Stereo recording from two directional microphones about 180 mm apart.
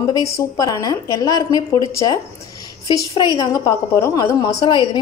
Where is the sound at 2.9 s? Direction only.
20° left (ahead or behind).